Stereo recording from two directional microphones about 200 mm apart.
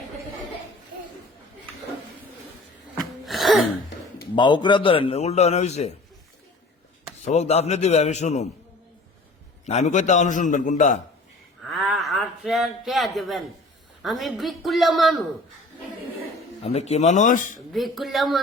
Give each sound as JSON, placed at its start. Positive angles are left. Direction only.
{"t": 3.0, "sound": "throat clearing", "side_deg": 0}
{"t": 4.4, "sound": "a man's voice", "side_deg": 20}
{"t": 7.3, "sound": "a man's voice", "side_deg": 35}
{"t": 9.6, "sound": "a man's voice", "side_deg": 35}
{"t": 11.6, "sound": "a man's voice", "side_deg": 0}
{"t": 16.6, "sound": "a man's voice", "side_deg": 30}
{"t": 17.7, "sound": "a man's voice", "side_deg": 0}